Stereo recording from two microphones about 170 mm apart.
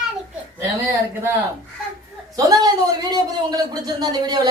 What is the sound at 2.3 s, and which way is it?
A man's voice, 20° right (ahead or behind).